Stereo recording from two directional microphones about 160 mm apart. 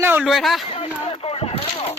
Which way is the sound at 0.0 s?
15° right (ahead or behind).